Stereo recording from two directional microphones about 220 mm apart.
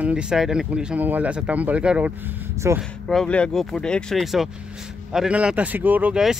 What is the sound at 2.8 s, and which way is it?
Speech, centre (ahead or behind).